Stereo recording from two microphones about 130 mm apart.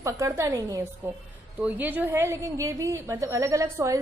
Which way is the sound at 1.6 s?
15° right (ahead or behind).